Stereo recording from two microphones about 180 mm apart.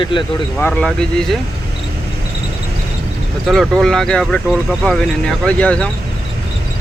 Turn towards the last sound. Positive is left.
turn(degrees=5)  # may be behind; listen again after turning